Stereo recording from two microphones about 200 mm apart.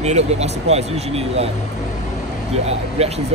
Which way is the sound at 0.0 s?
35° right (ahead or behind).